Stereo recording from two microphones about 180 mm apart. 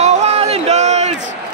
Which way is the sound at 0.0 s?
35° right (ahead or behind).